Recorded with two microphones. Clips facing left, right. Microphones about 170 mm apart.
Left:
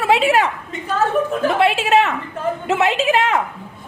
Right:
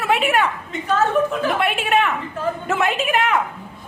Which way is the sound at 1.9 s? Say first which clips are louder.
Even; 25° left (ahead or behind).